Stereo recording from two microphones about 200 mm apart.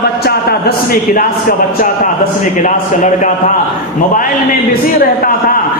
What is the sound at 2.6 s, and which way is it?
Speech, 40° left (ahead or behind).